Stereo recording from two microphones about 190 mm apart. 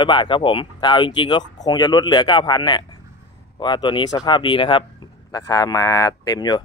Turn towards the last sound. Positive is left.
turn(degrees=20)  # may be behind; listen again after turning